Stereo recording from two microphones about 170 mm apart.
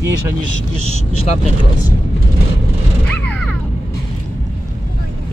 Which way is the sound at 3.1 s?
10° left (ahead or behind).